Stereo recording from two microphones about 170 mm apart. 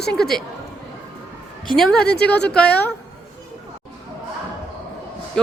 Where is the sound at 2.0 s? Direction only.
70° left (ahead or behind).